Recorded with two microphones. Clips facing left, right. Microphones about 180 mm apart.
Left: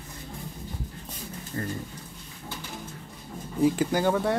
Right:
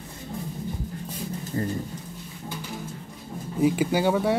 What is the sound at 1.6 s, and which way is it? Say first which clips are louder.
Speech: right 4 dB; 20° right (ahead or behind).